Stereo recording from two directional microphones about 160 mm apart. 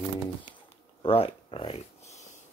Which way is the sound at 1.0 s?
35° left (ahead or behind).